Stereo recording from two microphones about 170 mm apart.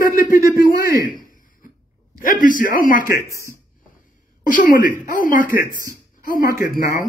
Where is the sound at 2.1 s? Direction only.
55° left (ahead or behind).